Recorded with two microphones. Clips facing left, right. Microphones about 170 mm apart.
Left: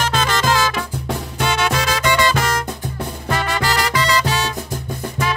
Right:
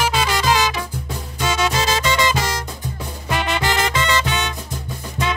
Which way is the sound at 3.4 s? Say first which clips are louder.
Right 1 dB; 20° right (ahead or behind).